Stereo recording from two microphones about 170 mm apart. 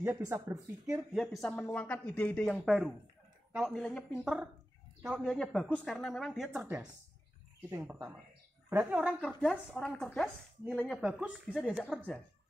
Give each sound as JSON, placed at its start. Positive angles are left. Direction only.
{"t": 0.0, "sound": "speech", "side_deg": -15}
{"t": 0.9, "sound": "speech", "side_deg": 0}
{"t": 7.7, "sound": "speech", "side_deg": -15}
{"t": 9.2, "sound": "speech", "side_deg": 5}
{"t": 11.0, "sound": "speech", "side_deg": -5}